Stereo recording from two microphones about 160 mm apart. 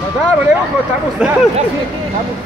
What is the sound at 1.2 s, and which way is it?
Speech, 5° right (ahead or behind).